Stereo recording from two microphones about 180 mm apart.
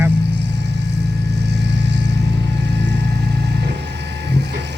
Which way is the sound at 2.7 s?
75° right (ahead or behind).